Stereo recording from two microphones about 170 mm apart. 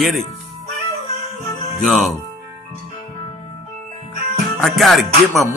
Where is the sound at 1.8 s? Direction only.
Centre (ahead or behind).